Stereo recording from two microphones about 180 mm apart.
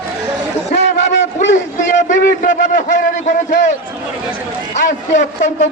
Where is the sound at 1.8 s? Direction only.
45° left (ahead or behind).